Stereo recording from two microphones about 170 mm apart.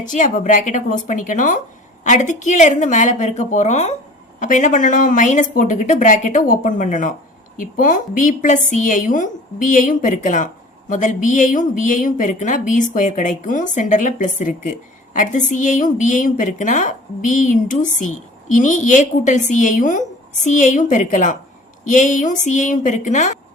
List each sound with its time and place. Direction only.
0.0 s a woman's voice: 50° left (ahead or behind)